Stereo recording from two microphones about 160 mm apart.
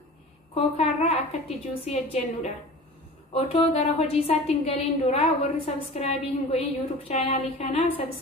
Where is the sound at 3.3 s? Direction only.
40° left (ahead or behind).